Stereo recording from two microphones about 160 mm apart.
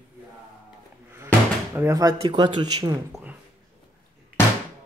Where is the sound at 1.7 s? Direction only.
20° right (ahead or behind).